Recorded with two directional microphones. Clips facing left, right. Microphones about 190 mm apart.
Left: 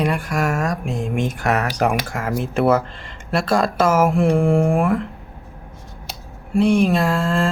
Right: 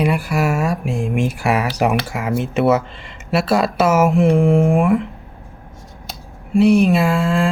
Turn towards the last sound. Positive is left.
turn(degrees=-5)  # may be behind; listen again after turning